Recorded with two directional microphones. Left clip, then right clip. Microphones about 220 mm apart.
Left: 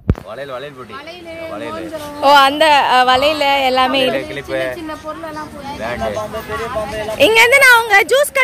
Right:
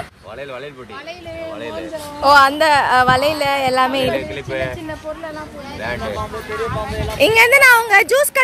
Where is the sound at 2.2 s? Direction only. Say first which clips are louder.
Left 1 dB; 10° left (ahead or behind).